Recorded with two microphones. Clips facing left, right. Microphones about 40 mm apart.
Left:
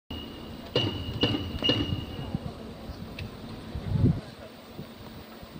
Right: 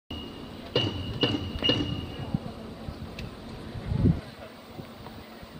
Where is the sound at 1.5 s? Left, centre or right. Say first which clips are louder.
Right 1 dB; centre.